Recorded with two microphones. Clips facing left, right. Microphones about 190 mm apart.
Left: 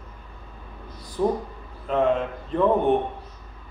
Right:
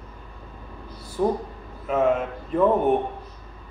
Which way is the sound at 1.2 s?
5° right (ahead or behind).